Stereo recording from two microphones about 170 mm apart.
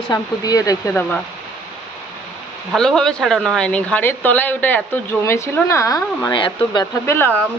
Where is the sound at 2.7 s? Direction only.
5° left (ahead or behind); by 6.8 s 30° left (ahead or behind).